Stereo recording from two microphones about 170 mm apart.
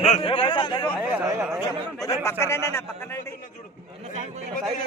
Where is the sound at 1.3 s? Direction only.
15° right (ahead or behind).